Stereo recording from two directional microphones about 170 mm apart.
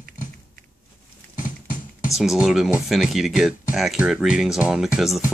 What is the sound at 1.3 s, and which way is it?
Patter, 50° left (ahead or behind).